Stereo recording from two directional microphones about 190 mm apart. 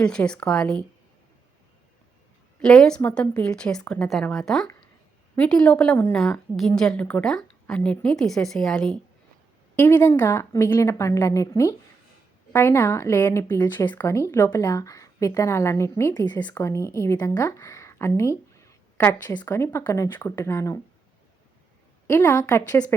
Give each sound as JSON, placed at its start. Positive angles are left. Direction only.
{"t": 0.0, "sound": "a woman's voice", "side_deg": 5}
{"t": 2.6, "sound": "a woman's voice", "side_deg": 5}
{"t": 22.0, "sound": "speech", "side_deg": 15}